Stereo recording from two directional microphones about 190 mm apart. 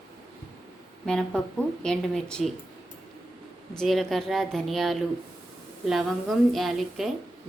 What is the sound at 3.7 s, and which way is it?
Speech, centre (ahead or behind).